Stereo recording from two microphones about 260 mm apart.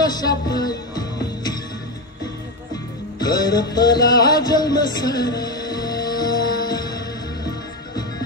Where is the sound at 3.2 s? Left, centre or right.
Centre.